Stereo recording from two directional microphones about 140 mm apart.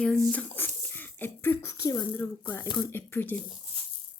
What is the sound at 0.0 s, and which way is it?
Speech, 5° left (ahead or behind).